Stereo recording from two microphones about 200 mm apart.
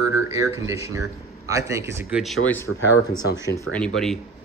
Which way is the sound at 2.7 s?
90° left.